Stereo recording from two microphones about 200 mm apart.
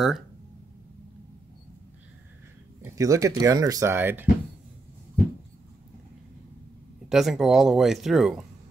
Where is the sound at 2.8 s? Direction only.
15° right (ahead or behind).